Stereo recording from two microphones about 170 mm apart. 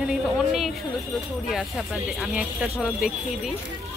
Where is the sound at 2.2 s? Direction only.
5° right (ahead or behind).